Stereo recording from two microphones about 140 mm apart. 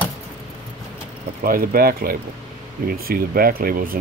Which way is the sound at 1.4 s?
90° right.